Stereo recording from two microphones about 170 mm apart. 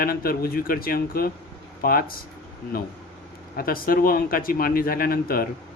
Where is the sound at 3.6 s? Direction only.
60° left (ahead or behind).